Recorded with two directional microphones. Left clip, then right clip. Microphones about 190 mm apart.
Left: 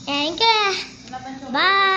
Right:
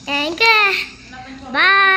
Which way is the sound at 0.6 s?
Centre (ahead or behind).